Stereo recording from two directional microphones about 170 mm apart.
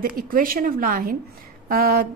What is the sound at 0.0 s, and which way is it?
A woman's voice, 55° right (ahead or behind).